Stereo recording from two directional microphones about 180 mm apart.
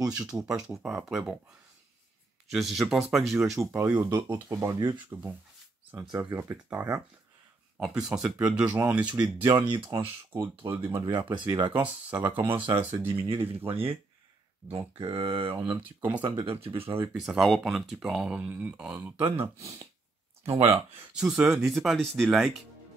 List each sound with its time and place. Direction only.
0.0 s speech: 20° right (ahead or behind)
0.4 s speech: 5° right (ahead or behind)
2.5 s speech: centre (ahead or behind)
3.5 s speech: 15° right (ahead or behind)
7.7 s speech: 5° right (ahead or behind)
9.1 s speech: 25° right (ahead or behind)
10.3 s speech: 15° right (ahead or behind)
11.1 s speech: 25° right (ahead or behind)
11.7 s speech: 10° right (ahead or behind)
12.5 s speech: 25° right (ahead or behind)
17.1 s speech: centre (ahead or behind)
20.4 s speech: 35° right (ahead or behind)
21.2 s speech: 5° right (ahead or behind)